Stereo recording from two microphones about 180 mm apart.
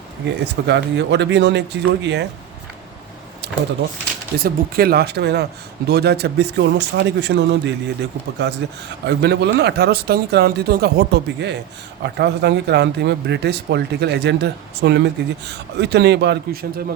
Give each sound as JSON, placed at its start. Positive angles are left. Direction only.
{"t": 0.4, "sound": "speech", "side_deg": -70}
{"t": 3.4, "sound": "a sound", "side_deg": -70}
{"t": 4.4, "sound": "speech", "side_deg": -55}